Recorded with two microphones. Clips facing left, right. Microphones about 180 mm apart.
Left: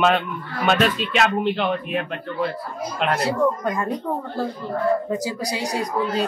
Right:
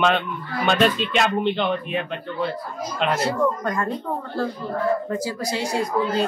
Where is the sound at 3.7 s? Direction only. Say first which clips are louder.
Left 1 dB; 15° left (ahead or behind).